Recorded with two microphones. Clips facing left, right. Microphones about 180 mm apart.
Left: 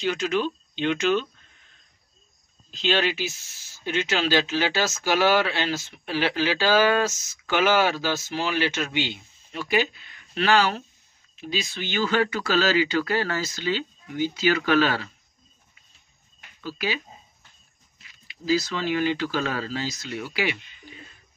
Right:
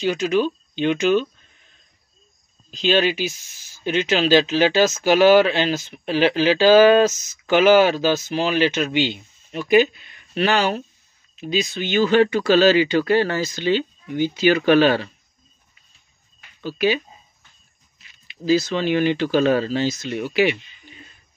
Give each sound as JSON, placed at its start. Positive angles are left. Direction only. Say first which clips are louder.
{"t": 0.1, "sound": "speech", "louder": "right 6 dB", "side_deg": -15}
{"t": 2.7, "sound": "speech", "louder": "right 5 dB", "side_deg": -15}
{"t": 16.6, "sound": "speech", "louder": "right 9 dB", "side_deg": -20}
{"t": 18.0, "sound": "speech", "louder": "right 5 dB", "side_deg": -20}